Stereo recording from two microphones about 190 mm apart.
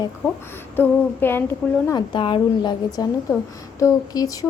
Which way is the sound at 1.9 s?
25° left (ahead or behind).